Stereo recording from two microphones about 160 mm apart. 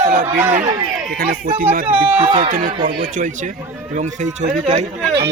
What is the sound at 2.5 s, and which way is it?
Speech, 60° right (ahead or behind).